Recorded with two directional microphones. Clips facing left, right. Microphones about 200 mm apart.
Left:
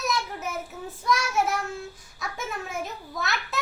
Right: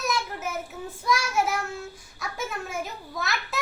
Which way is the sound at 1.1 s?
Centre (ahead or behind).